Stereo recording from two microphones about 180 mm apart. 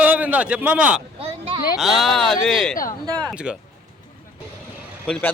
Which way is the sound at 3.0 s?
20° right (ahead or behind).